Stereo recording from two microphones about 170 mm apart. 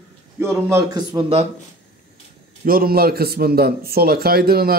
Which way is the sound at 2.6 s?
60° right (ahead or behind).